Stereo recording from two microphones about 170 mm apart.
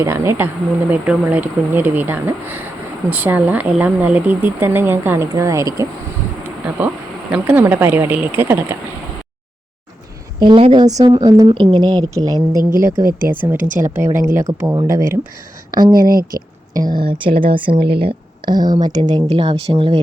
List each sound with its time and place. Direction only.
0.0 s speech: 15° right (ahead or behind)
10.4 s speech: 30° right (ahead or behind)
13.1 s speech: 55° right (ahead or behind)
13.3 s speech: 10° right (ahead or behind)
16.0 s speech: 60° right (ahead or behind)
17.0 s speech: 30° right (ahead or behind)